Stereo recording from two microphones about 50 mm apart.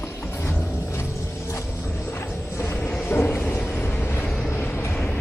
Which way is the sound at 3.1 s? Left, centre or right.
Left.